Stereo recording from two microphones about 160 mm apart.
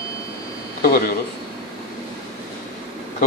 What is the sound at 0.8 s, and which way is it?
Speech, 70° left (ahead or behind).